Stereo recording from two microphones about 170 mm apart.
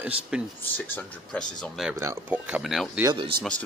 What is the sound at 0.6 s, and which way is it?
Speech, 10° left (ahead or behind).